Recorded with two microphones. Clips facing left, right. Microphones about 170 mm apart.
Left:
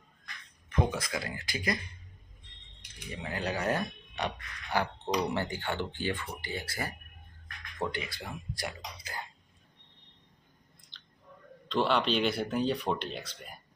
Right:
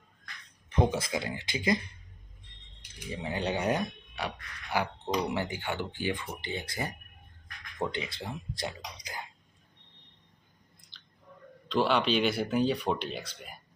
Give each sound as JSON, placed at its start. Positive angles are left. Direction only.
{"t": 0.7, "sound": "speech", "side_deg": -30}
{"t": 3.1, "sound": "speech", "side_deg": -25}
{"t": 10.9, "sound": "a sound", "side_deg": -5}
{"t": 11.7, "sound": "speech", "side_deg": 0}